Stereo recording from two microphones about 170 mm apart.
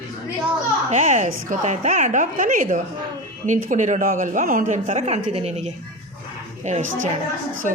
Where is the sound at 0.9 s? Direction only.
45° right (ahead or behind).